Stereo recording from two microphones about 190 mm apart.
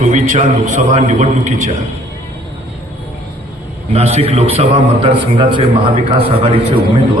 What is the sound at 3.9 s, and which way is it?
A man's voice, 35° right (ahead or behind).